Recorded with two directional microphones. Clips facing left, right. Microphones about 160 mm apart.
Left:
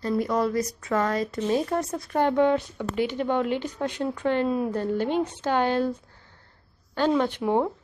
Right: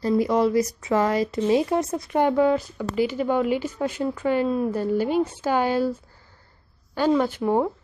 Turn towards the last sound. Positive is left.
turn(degrees=-5)  # may be behind; listen again after turning